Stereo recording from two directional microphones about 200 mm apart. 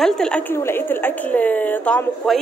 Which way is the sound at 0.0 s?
5° left (ahead or behind).